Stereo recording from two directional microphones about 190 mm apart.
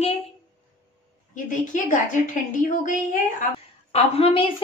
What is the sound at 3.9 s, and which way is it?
Speech, 30° left (ahead or behind).